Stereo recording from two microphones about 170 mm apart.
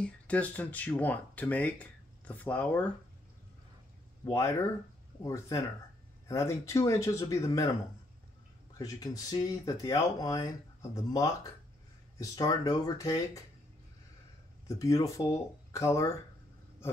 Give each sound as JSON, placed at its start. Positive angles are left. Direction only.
{"t": 0.0, "sound": "speech", "side_deg": 10}
{"t": 4.2, "sound": "speech", "side_deg": 20}
{"t": 8.7, "sound": "speech", "side_deg": 20}
{"t": 14.7, "sound": "speech", "side_deg": 20}